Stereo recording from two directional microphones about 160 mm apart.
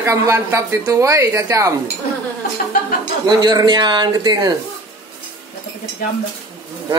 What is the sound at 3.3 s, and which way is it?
Speech, 25° right (ahead or behind).